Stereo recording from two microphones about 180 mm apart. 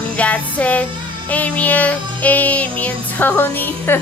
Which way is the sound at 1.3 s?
10° left (ahead or behind).